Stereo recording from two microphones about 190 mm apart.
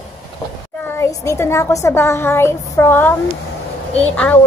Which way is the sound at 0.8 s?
15° left (ahead or behind).